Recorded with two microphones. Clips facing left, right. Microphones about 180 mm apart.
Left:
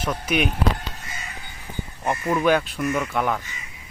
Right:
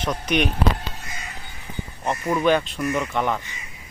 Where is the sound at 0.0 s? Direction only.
5° left (ahead or behind).